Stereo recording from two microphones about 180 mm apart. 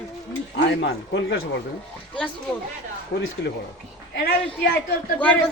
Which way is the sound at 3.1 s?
65° left (ahead or behind).